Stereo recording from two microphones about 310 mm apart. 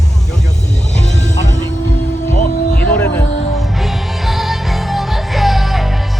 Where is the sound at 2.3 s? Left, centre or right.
Left.